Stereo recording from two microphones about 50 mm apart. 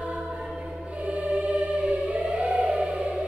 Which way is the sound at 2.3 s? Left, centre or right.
Right.